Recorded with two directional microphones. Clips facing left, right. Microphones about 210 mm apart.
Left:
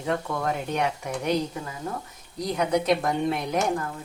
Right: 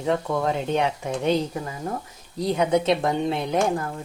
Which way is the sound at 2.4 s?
25° right (ahead or behind).